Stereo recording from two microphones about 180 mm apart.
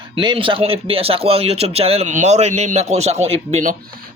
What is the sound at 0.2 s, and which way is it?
Speech, 25° right (ahead or behind).